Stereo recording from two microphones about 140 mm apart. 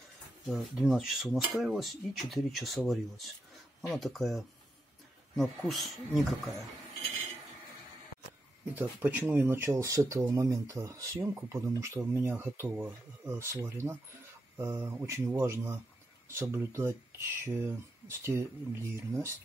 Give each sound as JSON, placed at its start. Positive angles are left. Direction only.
{"t": 0.5, "sound": "speech", "side_deg": 0}
{"t": 8.7, "sound": "speech", "side_deg": -15}